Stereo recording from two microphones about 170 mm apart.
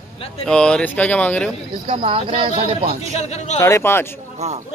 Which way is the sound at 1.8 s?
30° right (ahead or behind).